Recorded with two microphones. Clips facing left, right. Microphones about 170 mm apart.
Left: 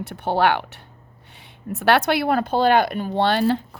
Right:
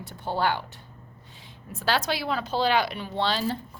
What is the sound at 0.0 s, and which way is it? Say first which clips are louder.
Speech: left 7 dB; 70° left (ahead or behind).